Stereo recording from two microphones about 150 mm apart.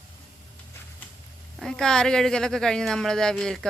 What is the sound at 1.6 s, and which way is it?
Speech, 5° left (ahead or behind).